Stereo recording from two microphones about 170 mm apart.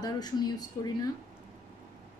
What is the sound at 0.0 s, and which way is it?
Speech, 25° left (ahead or behind).